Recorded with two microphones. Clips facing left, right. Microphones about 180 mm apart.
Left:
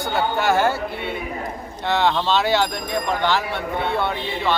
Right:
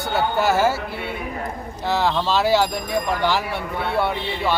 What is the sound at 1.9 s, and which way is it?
Speech, 5° right (ahead or behind).